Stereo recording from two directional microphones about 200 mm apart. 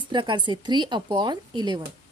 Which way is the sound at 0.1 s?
25° right (ahead or behind).